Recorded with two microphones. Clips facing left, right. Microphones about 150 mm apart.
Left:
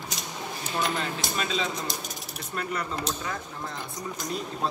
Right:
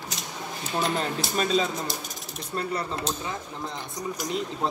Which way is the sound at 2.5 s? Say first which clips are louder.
Right 2 dB; 30° right (ahead or behind).